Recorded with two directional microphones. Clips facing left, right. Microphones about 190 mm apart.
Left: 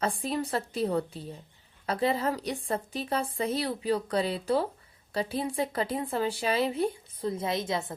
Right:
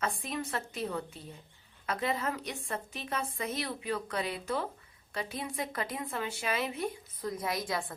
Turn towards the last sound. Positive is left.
turn(degrees=25)  # may be behind; listen again after turning